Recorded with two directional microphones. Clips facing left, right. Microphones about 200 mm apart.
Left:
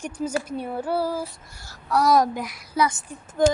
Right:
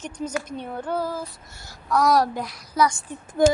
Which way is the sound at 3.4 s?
10° right (ahead or behind).